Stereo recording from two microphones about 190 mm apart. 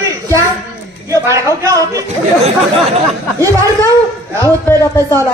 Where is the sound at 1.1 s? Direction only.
15° right (ahead or behind).